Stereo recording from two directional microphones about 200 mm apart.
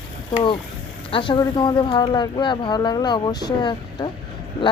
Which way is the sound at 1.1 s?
25° left (ahead or behind).